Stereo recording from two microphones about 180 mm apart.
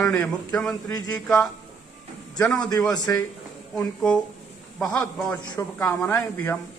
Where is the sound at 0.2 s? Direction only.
5° left (ahead or behind).